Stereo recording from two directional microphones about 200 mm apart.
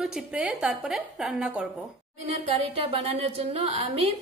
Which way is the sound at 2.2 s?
30° right (ahead or behind).